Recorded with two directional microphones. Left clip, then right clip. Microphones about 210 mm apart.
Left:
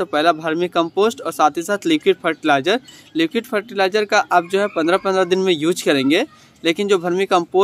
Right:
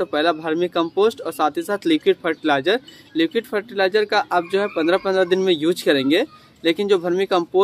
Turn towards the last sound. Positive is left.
turn(degrees=25)  # may be behind; listen again after turning